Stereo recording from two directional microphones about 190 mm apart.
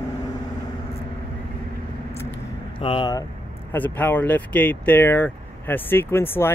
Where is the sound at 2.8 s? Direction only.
25° left (ahead or behind).